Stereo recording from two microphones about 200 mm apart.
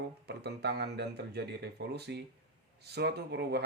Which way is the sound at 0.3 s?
55° right (ahead or behind).